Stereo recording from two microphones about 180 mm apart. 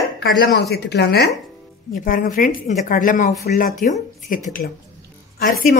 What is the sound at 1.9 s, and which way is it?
Speech, 50° left (ahead or behind).